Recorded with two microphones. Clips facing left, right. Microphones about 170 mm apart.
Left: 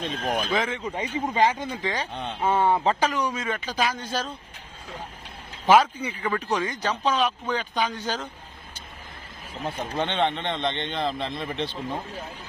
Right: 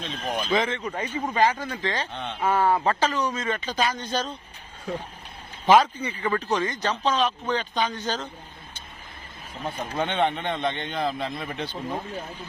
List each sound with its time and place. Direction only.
0.0 s speech: 50° left (ahead or behind)
0.5 s speech: 5° left (ahead or behind)
0.9 s speech: 15° left (ahead or behind)
2.4 s speech: 25° left (ahead or behind)
3.0 s speech: 10° left (ahead or behind)
5.6 s speech: 5° left (ahead or behind)
9.6 s speech: centre (ahead or behind)
10.4 s speech: 20° left (ahead or behind)
10.9 s speech: centre (ahead or behind)
11.5 s speech: 25° left (ahead or behind)